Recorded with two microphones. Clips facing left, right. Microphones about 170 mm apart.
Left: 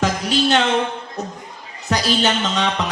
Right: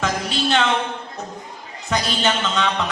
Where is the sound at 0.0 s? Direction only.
40° left (ahead or behind).